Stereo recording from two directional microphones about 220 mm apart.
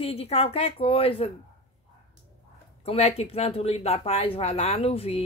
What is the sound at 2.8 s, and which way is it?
Speech, 30° left (ahead or behind).